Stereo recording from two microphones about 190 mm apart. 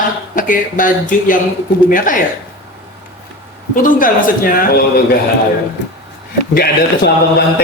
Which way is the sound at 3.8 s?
45° left (ahead or behind).